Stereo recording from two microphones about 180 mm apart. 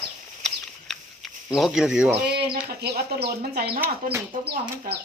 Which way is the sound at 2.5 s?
60° right (ahead or behind).